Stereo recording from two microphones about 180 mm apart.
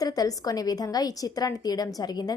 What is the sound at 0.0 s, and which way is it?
A woman's voice, 20° left (ahead or behind).